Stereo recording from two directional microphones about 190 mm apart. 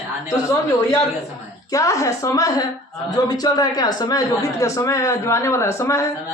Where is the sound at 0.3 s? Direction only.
20° left (ahead or behind).